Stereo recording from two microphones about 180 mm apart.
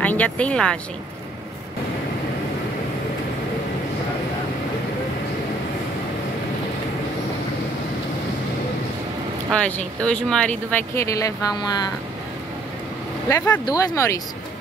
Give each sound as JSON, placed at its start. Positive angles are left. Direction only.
{"t": 0.0, "sound": "speech", "side_deg": 10}
{"t": 9.5, "sound": "speech", "side_deg": 5}
{"t": 13.3, "sound": "speech", "side_deg": 20}